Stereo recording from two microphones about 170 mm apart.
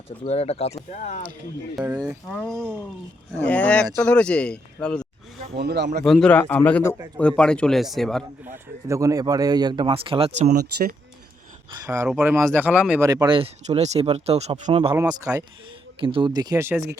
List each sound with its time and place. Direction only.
0.3 s speech: 40° left (ahead or behind)
1.7 s speech: 10° right (ahead or behind)
2.3 s a man's voice: 5° left (ahead or behind)
5.5 s speech: 80° right
6.1 s a man's voice: 5° left (ahead or behind)
8.9 s speech: 20° right (ahead or behind); by 10.5 s 35° right (ahead or behind)
10.5 s speech: 70° right (ahead or behind)
12.0 s speech: 10° right (ahead or behind)
13.1 s speech: 25° right (ahead or behind)
13.7 s speech: 40° right (ahead or behind)
14.9 s speech: 20° right (ahead or behind)
16.0 s speech: 30° right (ahead or behind)